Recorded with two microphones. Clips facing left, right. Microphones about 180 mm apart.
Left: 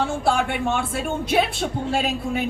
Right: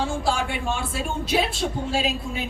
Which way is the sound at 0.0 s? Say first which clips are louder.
Left 3 dB; 60° left (ahead or behind).